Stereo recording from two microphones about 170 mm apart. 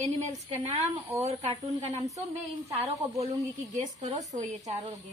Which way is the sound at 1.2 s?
35° right (ahead or behind).